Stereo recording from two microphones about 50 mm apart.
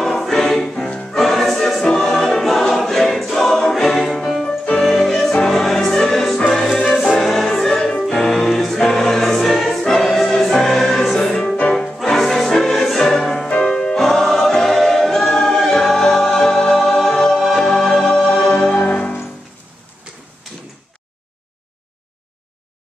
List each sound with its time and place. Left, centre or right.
0.0 s music: centre
2.4 s choir: centre
4.8 s music: centre
7.2 s choir: centre
8.1 s music: centre
18.5 s music: centre